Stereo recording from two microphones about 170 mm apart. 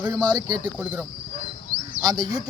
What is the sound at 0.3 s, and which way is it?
Speech, 25° right (ahead or behind).